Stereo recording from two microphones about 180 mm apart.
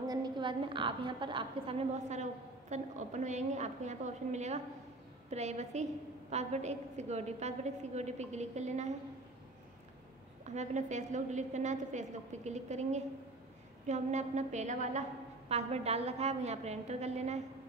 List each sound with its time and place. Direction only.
0.0 s a woman's voice: 20° right (ahead or behind); by 8.9 s 40° right (ahead or behind)
10.4 s a woman's voice: 40° right (ahead or behind)